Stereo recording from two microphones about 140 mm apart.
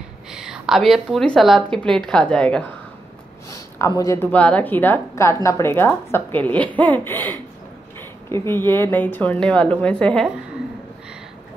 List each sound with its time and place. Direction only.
0.3 s a woman's voice: 5° right (ahead or behind)
3.4 s a sound: 20° left (ahead or behind)
4.3 s a woman's voice: 10° left (ahead or behind)
8.3 s a woman's voice: 15° left (ahead or behind)